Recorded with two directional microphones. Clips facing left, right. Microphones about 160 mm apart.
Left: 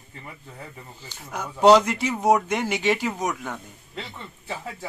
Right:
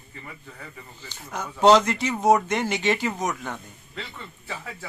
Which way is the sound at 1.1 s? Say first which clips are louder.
Even; 10° left (ahead or behind).